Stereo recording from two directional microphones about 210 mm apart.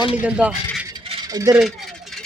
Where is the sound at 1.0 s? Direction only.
20° right (ahead or behind).